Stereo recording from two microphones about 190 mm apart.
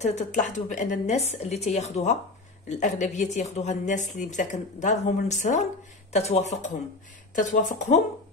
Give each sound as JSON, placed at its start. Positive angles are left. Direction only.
{"t": 0.0, "sound": "speech", "side_deg": 35}